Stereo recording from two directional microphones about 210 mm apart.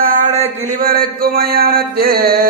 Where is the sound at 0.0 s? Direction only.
40° right (ahead or behind).